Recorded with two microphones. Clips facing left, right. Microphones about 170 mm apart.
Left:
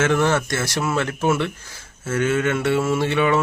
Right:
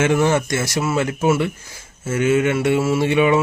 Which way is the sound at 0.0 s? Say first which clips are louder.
Right 2 dB; 15° right (ahead or behind).